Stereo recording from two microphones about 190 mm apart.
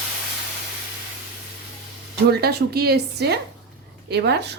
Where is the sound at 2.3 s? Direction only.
55° right (ahead or behind).